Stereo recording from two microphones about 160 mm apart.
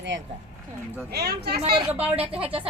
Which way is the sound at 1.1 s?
85° right.